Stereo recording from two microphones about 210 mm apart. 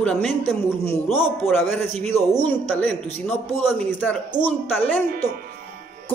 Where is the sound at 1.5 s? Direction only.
5° left (ahead or behind).